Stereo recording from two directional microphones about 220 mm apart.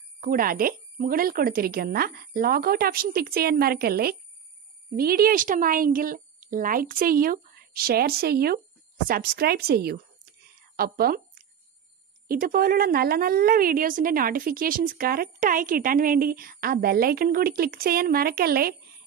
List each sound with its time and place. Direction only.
0.2 s a woman's voice: 40° right (ahead or behind)